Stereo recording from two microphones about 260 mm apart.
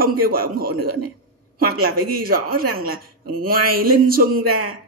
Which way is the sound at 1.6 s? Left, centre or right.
Right.